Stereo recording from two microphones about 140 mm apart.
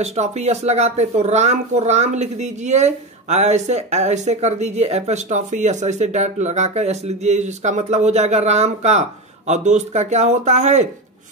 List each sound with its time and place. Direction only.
0.0 s speech: 50° right (ahead or behind)